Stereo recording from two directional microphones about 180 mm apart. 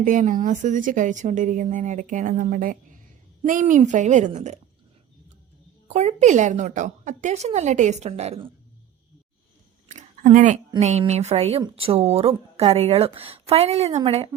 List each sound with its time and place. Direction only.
0.0 s speech: 45° right (ahead or behind)
5.9 s speech: 40° right (ahead or behind)
9.9 s a sound: 40° right (ahead or behind)
10.8 s speech: 35° right (ahead or behind)